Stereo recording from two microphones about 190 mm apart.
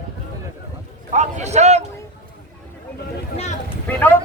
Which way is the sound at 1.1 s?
35° right (ahead or behind).